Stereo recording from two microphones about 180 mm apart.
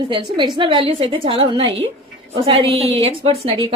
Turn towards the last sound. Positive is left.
turn(degrees=-30)  # may be behind; listen again after turning